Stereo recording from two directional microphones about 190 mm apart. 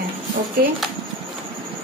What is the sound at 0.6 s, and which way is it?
Speech, 55° right (ahead or behind).